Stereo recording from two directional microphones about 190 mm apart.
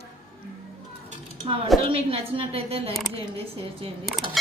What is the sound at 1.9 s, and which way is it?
A woman's voice, 30° right (ahead or behind).